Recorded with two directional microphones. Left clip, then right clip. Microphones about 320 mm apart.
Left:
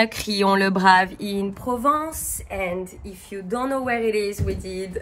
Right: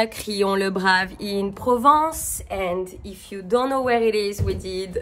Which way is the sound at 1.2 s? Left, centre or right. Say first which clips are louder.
Right 2 dB; centre.